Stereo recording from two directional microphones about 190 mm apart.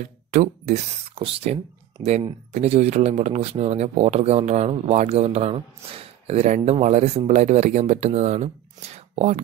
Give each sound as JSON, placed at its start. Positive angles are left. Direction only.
{"t": 0.0, "sound": "speech", "side_deg": -40}